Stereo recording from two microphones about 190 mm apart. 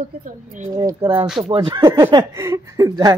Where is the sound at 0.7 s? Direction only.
20° right (ahead or behind).